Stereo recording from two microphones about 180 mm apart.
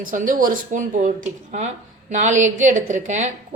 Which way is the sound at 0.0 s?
45° right (ahead or behind).